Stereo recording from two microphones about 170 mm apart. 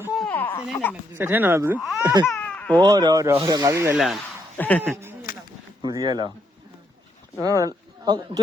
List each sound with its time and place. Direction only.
0.0 s a sound: 5° right (ahead or behind)
0.3 s a sound: 10° left (ahead or behind)
1.1 s speech: 10° right (ahead or behind)
2.2 s baby cry: 10° left (ahead or behind)
2.8 s speech: 25° right (ahead or behind)
3.9 s speech: centre (ahead or behind)
4.8 s speech: 10° right (ahead or behind)
5.8 s speech: 25° right (ahead or behind)
7.4 s speech: 20° right (ahead or behind)